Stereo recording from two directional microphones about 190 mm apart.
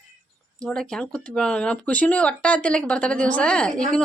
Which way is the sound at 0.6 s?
5° left (ahead or behind).